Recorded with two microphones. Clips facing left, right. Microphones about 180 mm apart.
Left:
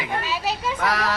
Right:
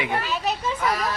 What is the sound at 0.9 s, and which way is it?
Speech, 75° left (ahead or behind).